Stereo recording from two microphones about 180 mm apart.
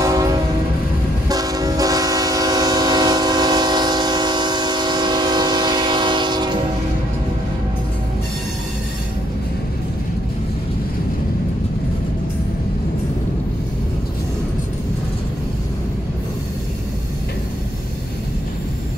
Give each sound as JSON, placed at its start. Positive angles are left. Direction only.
{"t": 0.0, "sound": "train", "side_deg": -20}